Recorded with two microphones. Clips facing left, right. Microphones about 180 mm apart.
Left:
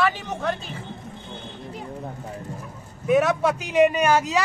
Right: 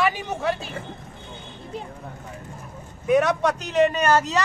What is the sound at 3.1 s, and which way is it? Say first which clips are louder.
A man's voice: even; centre (ahead or behind).